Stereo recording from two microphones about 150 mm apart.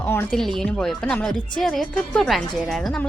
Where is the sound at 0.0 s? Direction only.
10° left (ahead or behind).